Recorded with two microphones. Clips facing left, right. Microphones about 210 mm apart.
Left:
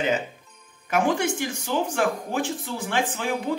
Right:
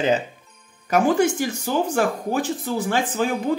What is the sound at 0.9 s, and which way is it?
Speech, 40° right (ahead or behind).